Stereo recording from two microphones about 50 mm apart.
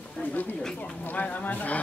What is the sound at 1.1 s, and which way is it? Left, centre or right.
Speech, left.